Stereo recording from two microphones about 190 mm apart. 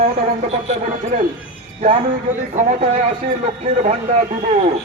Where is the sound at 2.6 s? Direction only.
35° right (ahead or behind).